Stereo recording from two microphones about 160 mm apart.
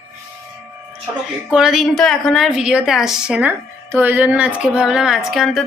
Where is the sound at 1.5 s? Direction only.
5° right (ahead or behind).